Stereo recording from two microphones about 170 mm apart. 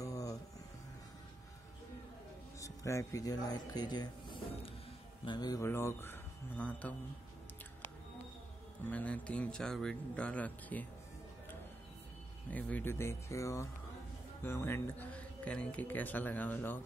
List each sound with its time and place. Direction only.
0.0 s a sound: 20° left (ahead or behind)
2.6 s speech: 20° left (ahead or behind)
8.9 s speech: 10° left (ahead or behind)
12.4 s speech: 10° left (ahead or behind)